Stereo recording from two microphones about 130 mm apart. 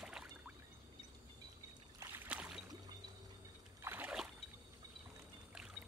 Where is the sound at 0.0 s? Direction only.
5° right (ahead or behind).